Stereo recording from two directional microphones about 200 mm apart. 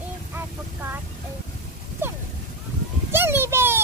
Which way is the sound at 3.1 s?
10° right (ahead or behind).